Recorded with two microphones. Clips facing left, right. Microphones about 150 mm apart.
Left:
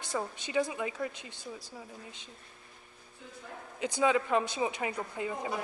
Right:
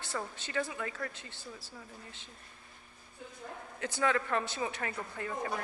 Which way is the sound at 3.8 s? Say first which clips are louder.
Left 4 dB; 15° left (ahead or behind).